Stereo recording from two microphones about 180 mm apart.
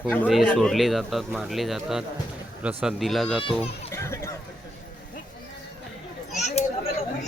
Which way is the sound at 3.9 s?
15° left (ahead or behind).